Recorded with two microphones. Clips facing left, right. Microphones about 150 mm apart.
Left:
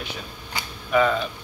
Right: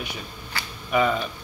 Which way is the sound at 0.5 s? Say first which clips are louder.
Left 1 dB; 15° left (ahead or behind).